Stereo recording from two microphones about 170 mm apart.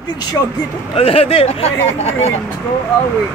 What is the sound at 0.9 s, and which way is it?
Speech, 35° left (ahead or behind).